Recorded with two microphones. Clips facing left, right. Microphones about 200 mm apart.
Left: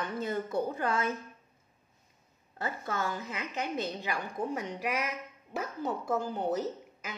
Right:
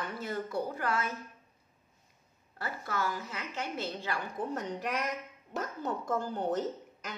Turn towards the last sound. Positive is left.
turn(degrees=10)  # may be behind; listen again after turning